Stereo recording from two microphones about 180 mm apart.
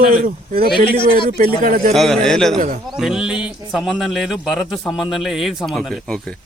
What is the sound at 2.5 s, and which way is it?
Speech, 45° right (ahead or behind).